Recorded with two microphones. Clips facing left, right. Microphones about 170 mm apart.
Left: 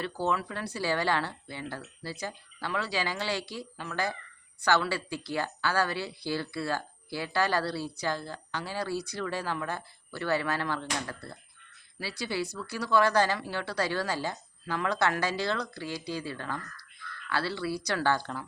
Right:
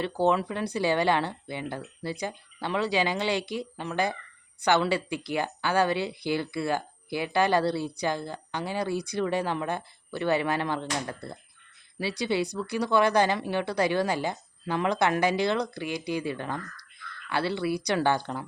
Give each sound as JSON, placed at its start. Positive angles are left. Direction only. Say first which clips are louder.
{"t": 0.0, "sound": "speech", "louder": "right 6 dB", "side_deg": -20}